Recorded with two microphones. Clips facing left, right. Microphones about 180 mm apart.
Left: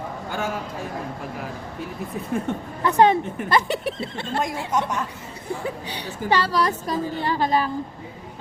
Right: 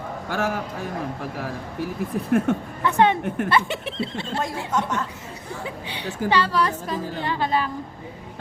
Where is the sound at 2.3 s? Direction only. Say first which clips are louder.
Right 6 dB; 85° right.